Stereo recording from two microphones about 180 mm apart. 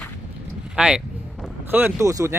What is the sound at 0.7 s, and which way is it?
Speech, 5° right (ahead or behind).